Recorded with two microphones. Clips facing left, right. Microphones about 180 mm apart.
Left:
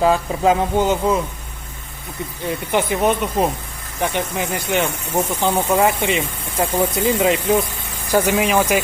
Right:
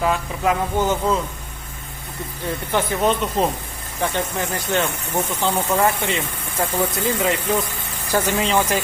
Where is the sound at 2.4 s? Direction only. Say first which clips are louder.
Left 2 dB; 15° left (ahead or behind).